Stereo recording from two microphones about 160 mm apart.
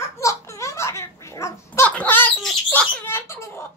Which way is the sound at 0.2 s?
20° left (ahead or behind).